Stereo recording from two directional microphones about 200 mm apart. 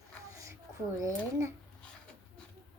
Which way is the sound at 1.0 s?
15° right (ahead or behind).